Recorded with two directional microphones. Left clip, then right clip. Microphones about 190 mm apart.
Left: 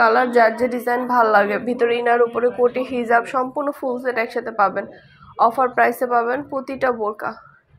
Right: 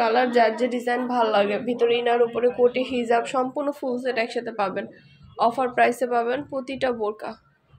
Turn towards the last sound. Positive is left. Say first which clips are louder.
# left 5 dB
turn(degrees=5)  # may be behind; listen again after turning